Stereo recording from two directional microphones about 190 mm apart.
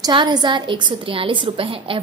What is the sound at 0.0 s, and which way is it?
A woman's voice, 20° right (ahead or behind).